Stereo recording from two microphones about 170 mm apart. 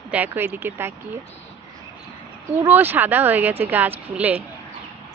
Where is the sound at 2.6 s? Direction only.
10° right (ahead or behind).